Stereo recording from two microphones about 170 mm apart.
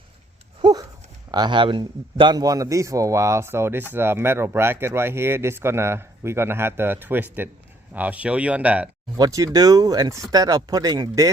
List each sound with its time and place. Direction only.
0.6 s a sound: 25° right (ahead or behind)
1.3 s a man's voice: 25° right (ahead or behind); by 8.9 s 10° right (ahead or behind)
9.1 s a man's voice: 20° right (ahead or behind)